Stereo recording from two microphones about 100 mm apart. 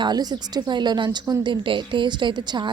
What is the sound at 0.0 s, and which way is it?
A woman's voice, 45° right (ahead or behind).